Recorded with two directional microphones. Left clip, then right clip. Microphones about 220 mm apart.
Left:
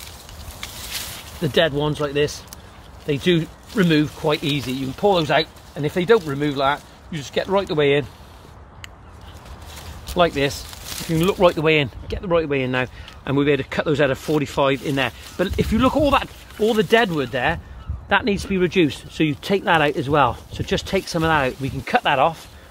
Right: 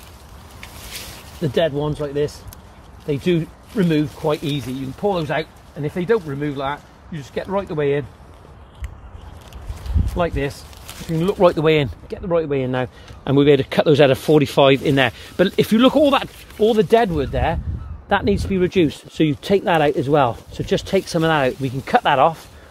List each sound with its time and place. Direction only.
1.4 s speech: 10° right (ahead or behind)
10.1 s speech: centre (ahead or behind)
11.4 s speech: 25° right (ahead or behind)
12.3 s speech: 15° right (ahead or behind)